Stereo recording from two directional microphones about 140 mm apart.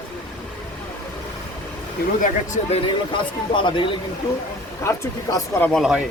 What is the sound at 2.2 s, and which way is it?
Speech, 60° left (ahead or behind).